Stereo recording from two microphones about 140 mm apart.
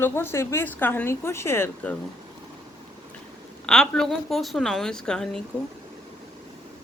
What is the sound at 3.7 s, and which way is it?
A woman's voice, 5° left (ahead or behind).